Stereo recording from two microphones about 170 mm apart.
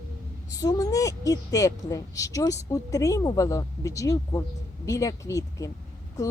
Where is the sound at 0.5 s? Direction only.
20° left (ahead or behind).